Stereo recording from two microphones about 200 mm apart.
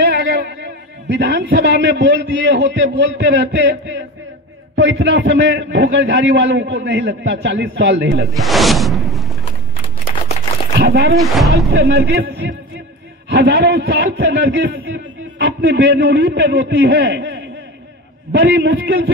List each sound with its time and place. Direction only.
0.0 s a man's voice: 50° right (ahead or behind)
8.3 s speech: centre (ahead or behind)
10.4 s a sound: 35° left (ahead or behind)
10.8 s speech: 55° right (ahead or behind)
11.1 s speech: centre (ahead or behind)
11.7 s a man's voice: 55° right (ahead or behind)